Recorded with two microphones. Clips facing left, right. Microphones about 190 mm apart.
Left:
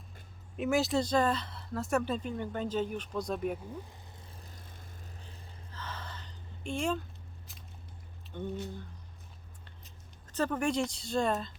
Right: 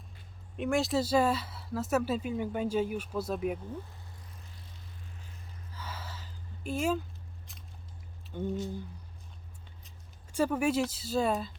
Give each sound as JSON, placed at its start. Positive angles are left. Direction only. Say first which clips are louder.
{"t": 0.5, "sound": "speech", "louder": "even", "side_deg": 0}
{"t": 4.5, "sound": "boat", "louder": "left 1 dB", "side_deg": 50}
{"t": 5.7, "sound": "a sound", "louder": "even", "side_deg": -10}
{"t": 8.3, "sound": "speech", "louder": "right 3 dB", "side_deg": -10}
{"t": 10.2, "sound": "speech", "louder": "right 3 dB", "side_deg": -10}